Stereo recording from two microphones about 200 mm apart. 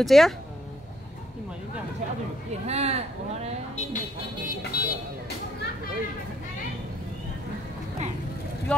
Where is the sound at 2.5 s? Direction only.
30° right (ahead or behind).